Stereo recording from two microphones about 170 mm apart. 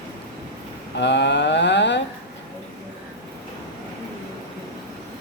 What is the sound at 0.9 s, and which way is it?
Speech, 90° left.